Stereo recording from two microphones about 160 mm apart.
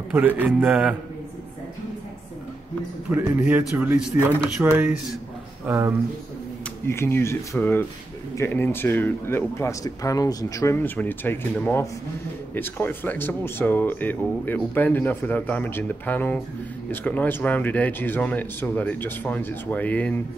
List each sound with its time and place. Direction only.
0.1 s a man's voice: 10° right (ahead or behind)
3.1 s a man's voice: 10° right (ahead or behind)
6.9 s speech: 15° left (ahead or behind)